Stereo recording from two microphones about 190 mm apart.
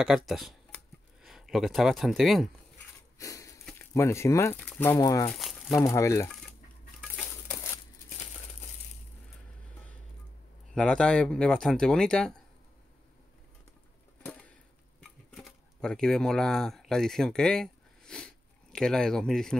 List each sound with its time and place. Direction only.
0.0 s speech: centre (ahead or behind)
3.2 s a sound: 15° left (ahead or behind)
3.7 s speech: 15° left (ahead or behind)
5.3 s crumpling: centre (ahead or behind)
5.9 s speech: 15° left (ahead or behind)
7.5 s crumpling: 15° left (ahead or behind)
10.7 s speech: 5° left (ahead or behind)
15.0 s a sound: centre (ahead or behind)